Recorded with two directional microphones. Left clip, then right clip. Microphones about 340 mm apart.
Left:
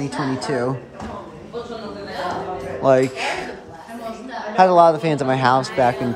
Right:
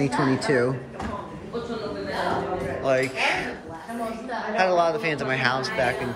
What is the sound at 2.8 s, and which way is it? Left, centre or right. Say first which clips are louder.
Speech: left 7 dB; centre.